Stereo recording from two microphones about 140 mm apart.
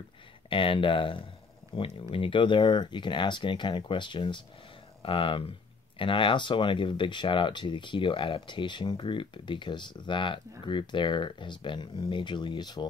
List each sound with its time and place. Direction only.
0.5 s speech: 40° left (ahead or behind)